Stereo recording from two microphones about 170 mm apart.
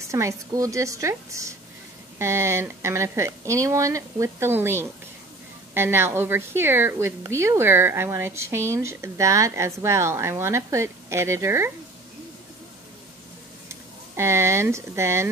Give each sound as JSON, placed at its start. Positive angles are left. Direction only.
{"t": 0.1, "sound": "a woman's voice", "side_deg": -20}
{"t": 13.7, "sound": "speech", "side_deg": -15}